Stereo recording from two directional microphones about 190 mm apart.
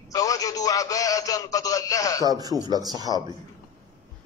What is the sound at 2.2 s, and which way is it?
Speech, 20° right (ahead or behind).